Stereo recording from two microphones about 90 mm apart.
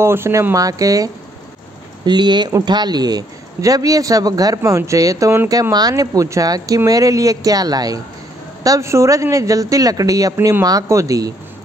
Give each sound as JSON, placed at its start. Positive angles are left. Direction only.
{"t": 0.0, "sound": "speech", "side_deg": -30}
{"t": 2.0, "sound": "speech", "side_deg": -55}
{"t": 4.6, "sound": "speech", "side_deg": -35}